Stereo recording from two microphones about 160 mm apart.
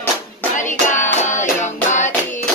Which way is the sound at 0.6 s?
50° left (ahead or behind).